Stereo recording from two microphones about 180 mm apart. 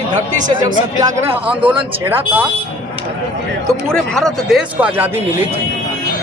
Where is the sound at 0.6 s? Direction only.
15° right (ahead or behind).